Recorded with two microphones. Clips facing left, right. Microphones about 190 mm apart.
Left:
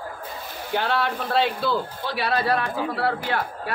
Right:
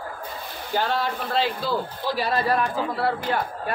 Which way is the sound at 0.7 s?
65° left (ahead or behind).